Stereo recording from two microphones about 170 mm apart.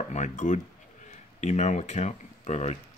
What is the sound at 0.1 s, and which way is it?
Speech, 45° left (ahead or behind).